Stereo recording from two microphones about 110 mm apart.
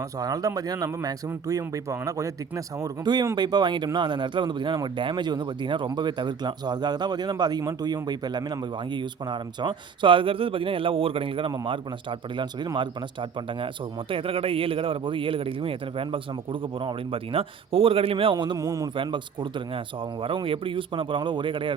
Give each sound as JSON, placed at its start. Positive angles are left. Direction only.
{"t": 0.2, "sound": "a man's voice", "side_deg": -35}
{"t": 18.5, "sound": "speech", "side_deg": -30}
{"t": 18.9, "sound": "speech", "side_deg": -45}